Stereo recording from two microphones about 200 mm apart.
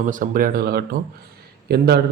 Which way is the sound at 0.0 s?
40° right (ahead or behind).